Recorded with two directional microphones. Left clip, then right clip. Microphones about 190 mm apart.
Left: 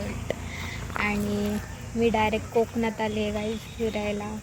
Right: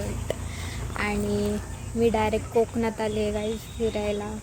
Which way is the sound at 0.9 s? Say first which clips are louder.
Left 1 dB; 15° left (ahead or behind).